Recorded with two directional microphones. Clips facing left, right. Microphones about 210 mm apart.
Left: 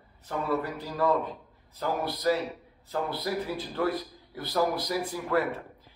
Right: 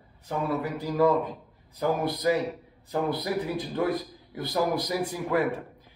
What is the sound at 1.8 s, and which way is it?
A man's voice, 15° right (ahead or behind).